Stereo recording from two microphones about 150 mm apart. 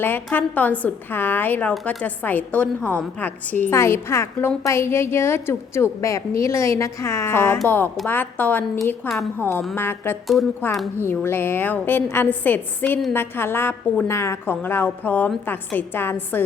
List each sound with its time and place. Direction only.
0.0 s a woman's voice: 15° left (ahead or behind)
9.0 s a woman's voice: centre (ahead or behind)
9.4 s a woman's voice: 15° left (ahead or behind)